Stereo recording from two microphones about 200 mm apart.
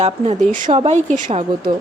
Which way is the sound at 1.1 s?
40° right (ahead or behind).